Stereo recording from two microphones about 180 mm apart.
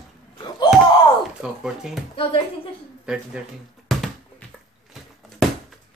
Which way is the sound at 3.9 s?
Centre (ahead or behind).